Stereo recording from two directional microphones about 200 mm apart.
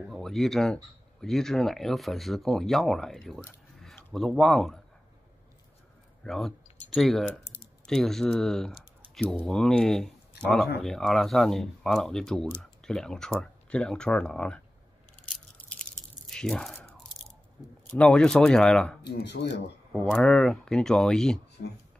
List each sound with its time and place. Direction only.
0.0 s speech: centre (ahead or behind)
6.2 s speech: centre (ahead or behind)
15.1 s a sound: 5° left (ahead or behind)
17.6 s a sound: 15° right (ahead or behind)
17.9 s speech: 5° left (ahead or behind)
19.0 s speech: 55° left (ahead or behind)
19.9 s speech: centre (ahead or behind)